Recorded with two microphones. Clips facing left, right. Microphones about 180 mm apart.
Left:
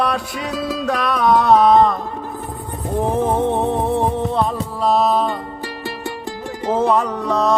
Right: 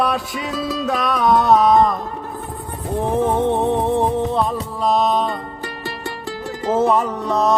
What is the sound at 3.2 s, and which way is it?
Music, centre (ahead or behind).